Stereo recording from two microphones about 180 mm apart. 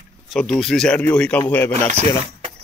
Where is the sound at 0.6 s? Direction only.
Centre (ahead or behind).